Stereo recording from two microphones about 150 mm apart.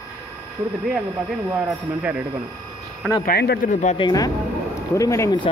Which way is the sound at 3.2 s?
85° left.